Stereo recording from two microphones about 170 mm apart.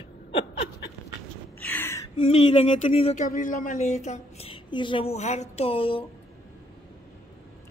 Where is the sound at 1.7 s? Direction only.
10° left (ahead or behind).